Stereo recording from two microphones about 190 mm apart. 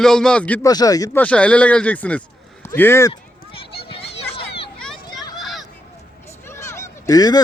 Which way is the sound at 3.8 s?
30° left (ahead or behind).